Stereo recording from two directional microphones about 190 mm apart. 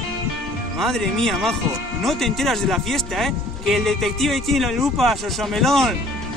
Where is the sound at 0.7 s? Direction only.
Centre (ahead or behind).